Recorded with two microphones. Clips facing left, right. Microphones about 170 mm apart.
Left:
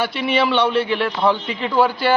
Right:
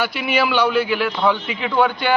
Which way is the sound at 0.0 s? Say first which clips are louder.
Left 1 dB; 5° right (ahead or behind).